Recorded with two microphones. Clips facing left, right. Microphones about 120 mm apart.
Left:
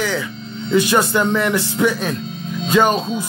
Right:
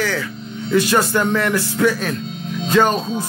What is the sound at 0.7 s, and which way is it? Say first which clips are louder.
Music: left 1 dB; 20° left (ahead or behind).